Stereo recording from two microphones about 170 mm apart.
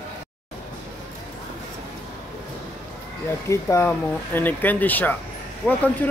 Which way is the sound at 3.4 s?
15° left (ahead or behind).